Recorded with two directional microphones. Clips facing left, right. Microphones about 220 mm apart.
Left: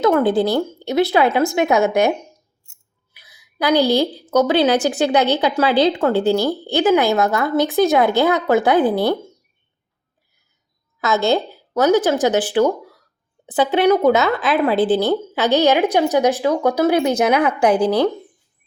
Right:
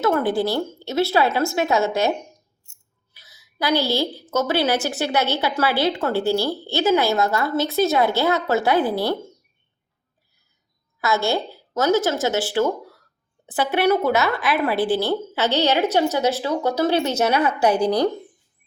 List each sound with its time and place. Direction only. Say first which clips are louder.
0.0 s a woman's voice: left 5 dB; 20° left (ahead or behind)
11.0 s a woman's voice: left 4 dB; 20° left (ahead or behind)